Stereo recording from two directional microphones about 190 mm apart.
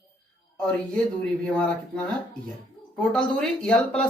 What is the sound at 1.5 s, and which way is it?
Speech, 5° left (ahead or behind).